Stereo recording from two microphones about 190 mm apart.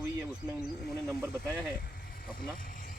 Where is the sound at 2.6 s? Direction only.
45° left (ahead or behind).